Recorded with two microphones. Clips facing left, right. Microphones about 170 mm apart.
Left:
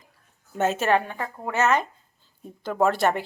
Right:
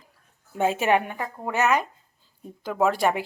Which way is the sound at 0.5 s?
10° right (ahead or behind).